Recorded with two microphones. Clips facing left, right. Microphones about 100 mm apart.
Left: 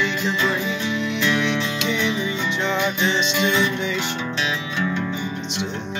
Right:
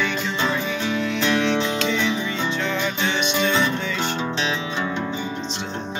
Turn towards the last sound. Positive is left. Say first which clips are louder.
# left 1 dB
turn(degrees=-30)  # may be behind; listen again after turning